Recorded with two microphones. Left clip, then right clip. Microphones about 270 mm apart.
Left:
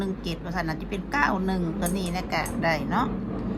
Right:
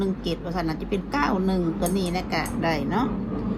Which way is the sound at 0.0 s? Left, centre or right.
Left.